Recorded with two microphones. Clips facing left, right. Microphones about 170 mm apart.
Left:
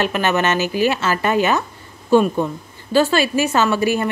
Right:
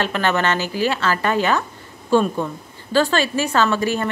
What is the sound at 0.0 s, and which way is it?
A woman's voice, 15° left (ahead or behind).